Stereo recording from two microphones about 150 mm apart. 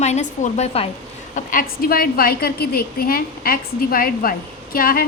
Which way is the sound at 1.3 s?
65° left (ahead or behind).